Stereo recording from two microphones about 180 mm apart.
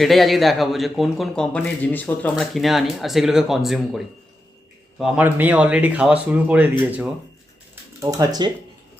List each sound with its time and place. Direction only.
0.0 s a man's voice: centre (ahead or behind)
2.4 s a man's voice: centre (ahead or behind)
8.0 s speech: 25° right (ahead or behind)